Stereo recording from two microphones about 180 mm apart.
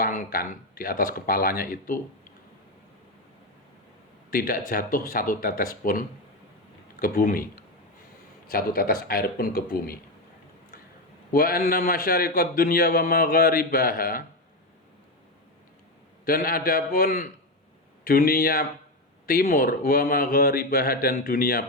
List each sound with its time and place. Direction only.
0.0 s speech: 50° left (ahead or behind)
4.3 s speech: 50° left (ahead or behind)
8.4 s a man's voice: 55° left (ahead or behind)
11.3 s a man's voice: 55° left (ahead or behind)
16.2 s a man's voice: 55° left (ahead or behind)